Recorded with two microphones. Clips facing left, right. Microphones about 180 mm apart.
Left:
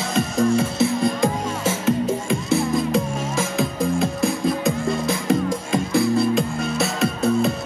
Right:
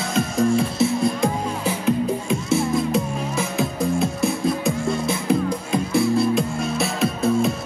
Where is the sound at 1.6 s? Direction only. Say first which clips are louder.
Left 1 dB; 85° left.